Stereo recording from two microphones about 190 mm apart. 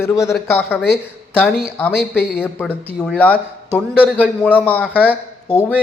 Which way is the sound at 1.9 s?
55° left (ahead or behind).